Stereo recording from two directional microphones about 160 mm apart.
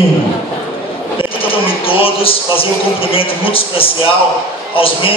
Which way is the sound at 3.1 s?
35° left (ahead or behind).